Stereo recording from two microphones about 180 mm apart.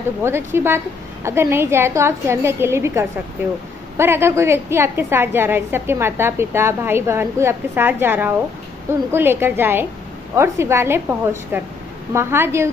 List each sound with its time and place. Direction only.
0.2 s a woman's voice: 15° right (ahead or behind)